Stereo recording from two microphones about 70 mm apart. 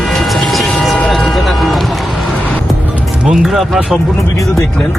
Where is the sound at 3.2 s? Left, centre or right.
Centre.